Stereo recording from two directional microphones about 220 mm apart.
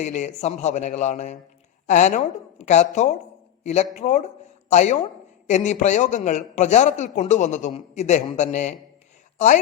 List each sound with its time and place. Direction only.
0.0 s a man's voice: 35° left (ahead or behind)